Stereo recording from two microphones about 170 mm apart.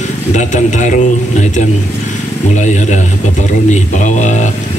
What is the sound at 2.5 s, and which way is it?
Speech, 45° left (ahead or behind).